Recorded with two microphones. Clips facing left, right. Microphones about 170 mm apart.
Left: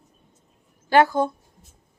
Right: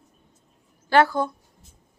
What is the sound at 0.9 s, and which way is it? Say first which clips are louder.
Speech: left 1 dB; 20° left (ahead or behind).